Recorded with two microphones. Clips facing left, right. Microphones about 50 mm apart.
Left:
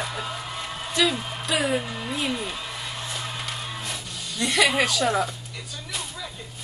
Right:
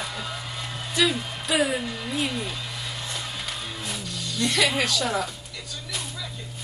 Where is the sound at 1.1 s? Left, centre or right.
Centre.